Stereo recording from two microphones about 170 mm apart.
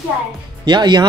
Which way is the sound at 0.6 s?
25° right (ahead or behind).